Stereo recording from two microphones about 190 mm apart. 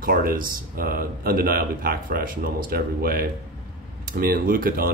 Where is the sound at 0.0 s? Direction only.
50° right (ahead or behind).